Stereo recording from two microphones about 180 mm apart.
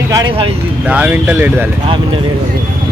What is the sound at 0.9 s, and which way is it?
Speech, 10° right (ahead or behind).